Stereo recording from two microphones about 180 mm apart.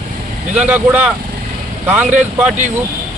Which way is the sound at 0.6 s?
10° right (ahead or behind).